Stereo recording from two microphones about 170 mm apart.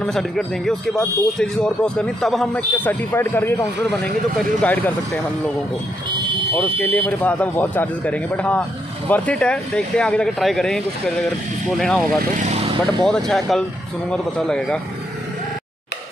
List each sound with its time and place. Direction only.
0.0 s speech: 5° left (ahead or behind)
6.5 s speech: 10° left (ahead or behind)
12.4 s vehicle: 40° right (ahead or behind)
12.8 s speech: centre (ahead or behind)